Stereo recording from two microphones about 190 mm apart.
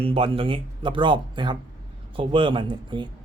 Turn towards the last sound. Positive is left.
turn(degrees=-25)  # may be behind; listen again after turning